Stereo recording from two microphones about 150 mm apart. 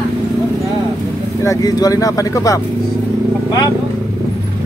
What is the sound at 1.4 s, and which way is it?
Speech, 25° left (ahead or behind).